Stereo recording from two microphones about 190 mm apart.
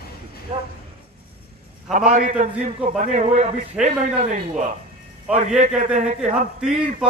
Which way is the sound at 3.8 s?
5° right (ahead or behind).